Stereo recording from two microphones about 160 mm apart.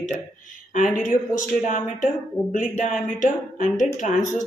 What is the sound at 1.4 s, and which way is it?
Speech, 55° left (ahead or behind).